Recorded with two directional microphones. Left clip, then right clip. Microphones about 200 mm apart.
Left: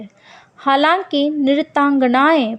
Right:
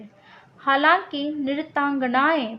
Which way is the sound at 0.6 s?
45° left (ahead or behind).